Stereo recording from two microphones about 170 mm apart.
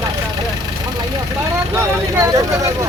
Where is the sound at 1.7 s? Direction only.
15° right (ahead or behind).